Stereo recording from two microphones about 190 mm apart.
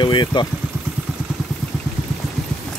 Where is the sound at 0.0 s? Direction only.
25° left (ahead or behind).